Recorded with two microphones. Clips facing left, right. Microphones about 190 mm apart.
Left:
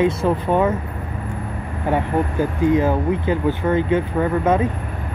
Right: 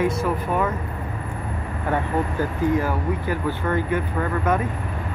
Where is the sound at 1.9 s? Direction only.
20° left (ahead or behind).